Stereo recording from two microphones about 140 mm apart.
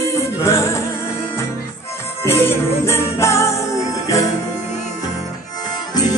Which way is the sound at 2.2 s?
15° left (ahead or behind).